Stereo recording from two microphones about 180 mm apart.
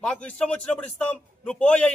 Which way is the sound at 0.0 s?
5° left (ahead or behind).